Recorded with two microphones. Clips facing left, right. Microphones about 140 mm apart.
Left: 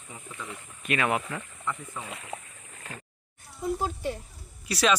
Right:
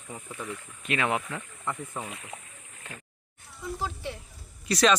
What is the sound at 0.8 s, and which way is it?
Speech, 20° right (ahead or behind).